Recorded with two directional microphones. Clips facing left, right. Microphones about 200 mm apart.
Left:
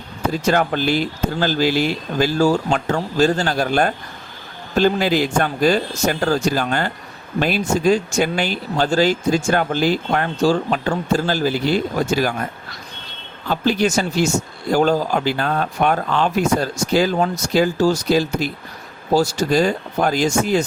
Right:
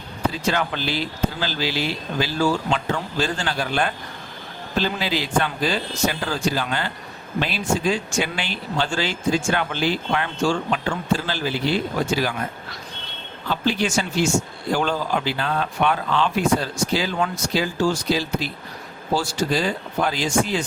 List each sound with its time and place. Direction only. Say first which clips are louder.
0.3 s speech: left 5 dB; 45° left (ahead or behind)
13.7 s speech: left 5 dB; 40° left (ahead or behind)